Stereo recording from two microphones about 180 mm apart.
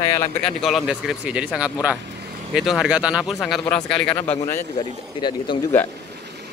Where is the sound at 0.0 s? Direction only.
15° left (ahead or behind).